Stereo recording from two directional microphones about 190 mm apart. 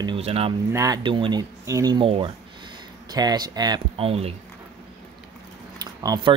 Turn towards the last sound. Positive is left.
turn(degrees=-20)  # may be behind; listen again after turning